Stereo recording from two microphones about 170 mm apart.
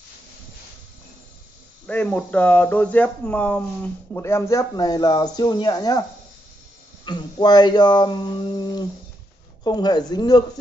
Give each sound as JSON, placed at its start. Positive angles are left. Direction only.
{"t": 1.9, "sound": "speech", "side_deg": 5}
{"t": 7.1, "sound": "speech", "side_deg": 25}